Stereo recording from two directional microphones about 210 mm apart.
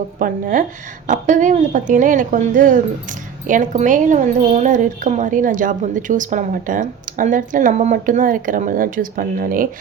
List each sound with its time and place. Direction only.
0.2 s speech: 40° right (ahead or behind)